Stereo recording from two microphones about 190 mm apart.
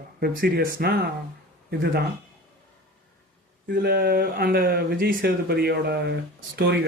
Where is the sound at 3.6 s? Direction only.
60° right (ahead or behind).